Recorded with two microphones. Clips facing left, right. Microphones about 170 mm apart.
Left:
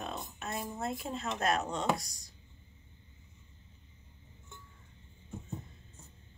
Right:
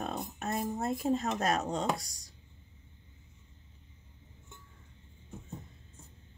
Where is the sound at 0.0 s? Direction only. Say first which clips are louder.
Right 4 dB; 45° right (ahead or behind).